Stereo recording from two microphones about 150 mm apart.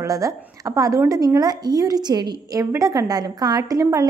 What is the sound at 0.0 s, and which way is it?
A woman's voice, 20° right (ahead or behind).